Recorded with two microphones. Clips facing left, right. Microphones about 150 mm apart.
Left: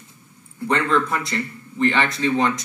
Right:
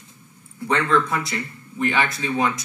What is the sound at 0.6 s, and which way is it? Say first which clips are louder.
Speech: even; 5° right (ahead or behind).